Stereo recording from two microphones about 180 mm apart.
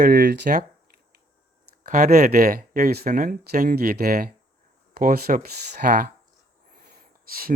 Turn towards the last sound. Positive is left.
turn(degrees=-50)  # may be behind; listen again after turning